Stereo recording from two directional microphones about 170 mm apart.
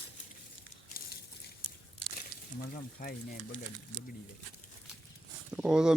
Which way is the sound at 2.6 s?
55° left (ahead or behind).